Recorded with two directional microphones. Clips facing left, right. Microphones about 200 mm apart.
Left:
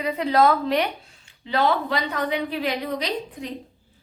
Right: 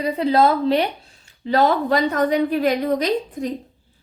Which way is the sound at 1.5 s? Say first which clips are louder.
Right 5 dB; 40° right (ahead or behind).